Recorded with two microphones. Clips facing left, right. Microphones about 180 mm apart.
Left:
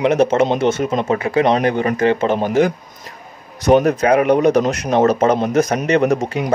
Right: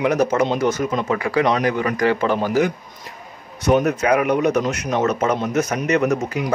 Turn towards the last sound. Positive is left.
turn(degrees=30)  # may be behind; listen again after turning